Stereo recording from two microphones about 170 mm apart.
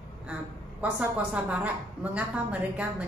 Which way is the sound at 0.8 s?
10° right (ahead or behind).